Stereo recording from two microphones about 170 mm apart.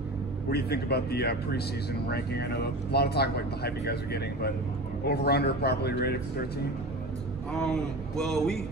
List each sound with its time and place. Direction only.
0.5 s speech: 70° left (ahead or behind)
7.5 s a man's voice: 5° left (ahead or behind)